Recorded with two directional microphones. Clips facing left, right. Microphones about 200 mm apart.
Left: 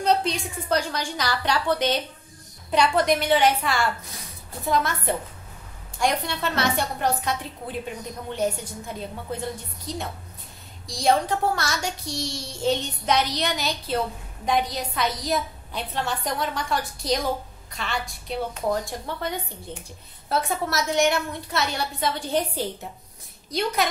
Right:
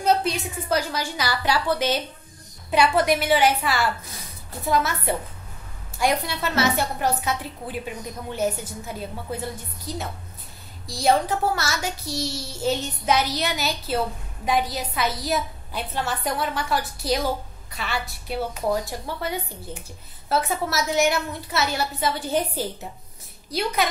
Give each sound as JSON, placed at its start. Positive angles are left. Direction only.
{"t": 0.0, "sound": "a woman's voice", "side_deg": -5}